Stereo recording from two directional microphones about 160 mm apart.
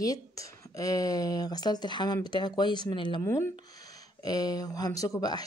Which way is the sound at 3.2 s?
15° left (ahead or behind).